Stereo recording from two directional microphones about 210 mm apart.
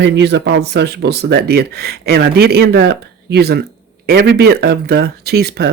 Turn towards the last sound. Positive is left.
turn(degrees=-50)  # may be behind; listen again after turning